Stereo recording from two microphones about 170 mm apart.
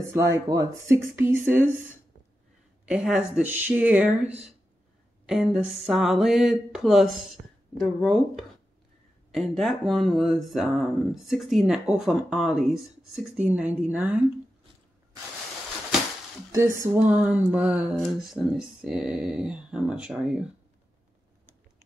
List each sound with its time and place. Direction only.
0.1 s speech: 15° right (ahead or behind)
2.8 s speech: 5° right (ahead or behind)
16.5 s speech: 15° right (ahead or behind)